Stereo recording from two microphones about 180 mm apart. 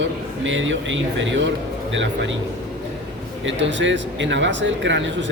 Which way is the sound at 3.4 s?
90° right.